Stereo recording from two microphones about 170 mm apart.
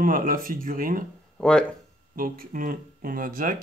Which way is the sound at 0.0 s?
55° right (ahead or behind).